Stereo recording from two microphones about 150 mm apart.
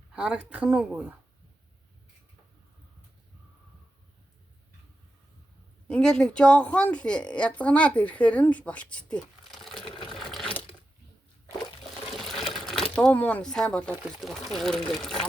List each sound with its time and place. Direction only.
0.1 s speech: 5° right (ahead or behind)
5.9 s a woman's voice: 5° left (ahead or behind)
9.8 s a sound: 35° left (ahead or behind)
10.2 s sewing machine: centre (ahead or behind)
12.1 s speech: centre (ahead or behind)